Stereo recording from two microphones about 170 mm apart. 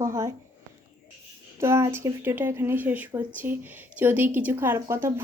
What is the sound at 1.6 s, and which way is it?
A woman's voice, 15° right (ahead or behind).